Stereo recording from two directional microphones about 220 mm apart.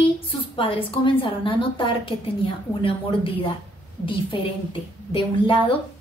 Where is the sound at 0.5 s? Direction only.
25° left (ahead or behind).